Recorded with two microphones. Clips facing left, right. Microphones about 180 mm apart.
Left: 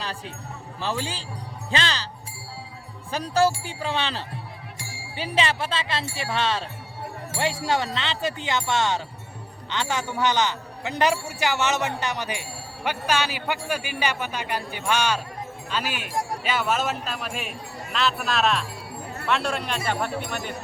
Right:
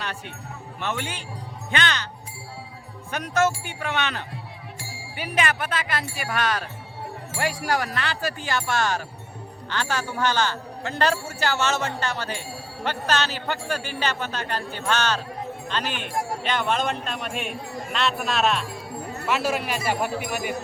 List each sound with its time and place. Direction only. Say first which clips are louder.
0.8 s speech: left 1 dB; 30° left (ahead or behind)
3.1 s a man's voice: left 1 dB; 30° left (ahead or behind); by 20.6 s 10° right (ahead or behind)